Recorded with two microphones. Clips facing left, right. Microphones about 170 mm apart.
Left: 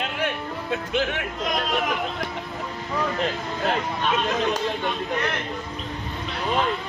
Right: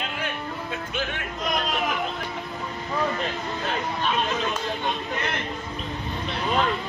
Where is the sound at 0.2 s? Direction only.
70° left (ahead or behind).